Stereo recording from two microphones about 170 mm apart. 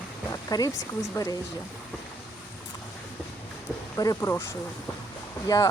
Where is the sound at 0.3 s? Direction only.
20° left (ahead or behind).